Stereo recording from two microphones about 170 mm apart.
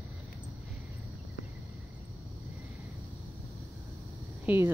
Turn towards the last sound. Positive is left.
turn(degrees=-10)  # may be behind; listen again after turning